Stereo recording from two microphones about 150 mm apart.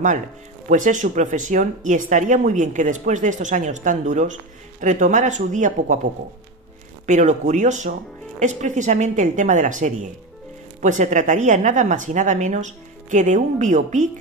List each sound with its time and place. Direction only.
0.7 s speech: 55° right (ahead or behind)
7.1 s speech: 55° right (ahead or behind)